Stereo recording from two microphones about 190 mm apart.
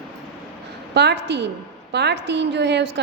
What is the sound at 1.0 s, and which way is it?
A woman's voice, 65° right (ahead or behind).